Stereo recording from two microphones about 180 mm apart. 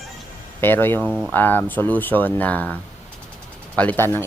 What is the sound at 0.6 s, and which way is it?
Speech, 10° left (ahead or behind).